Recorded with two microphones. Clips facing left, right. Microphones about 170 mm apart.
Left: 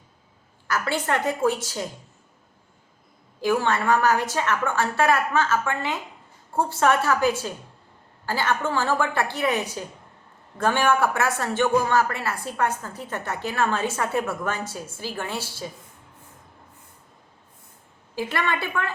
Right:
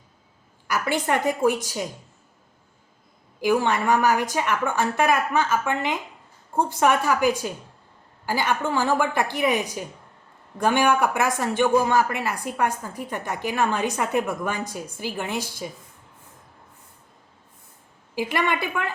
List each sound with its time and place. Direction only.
0.7 s speech: 15° right (ahead or behind)
3.4 s speech: 15° right (ahead or behind)
18.1 s speech: 15° right (ahead or behind)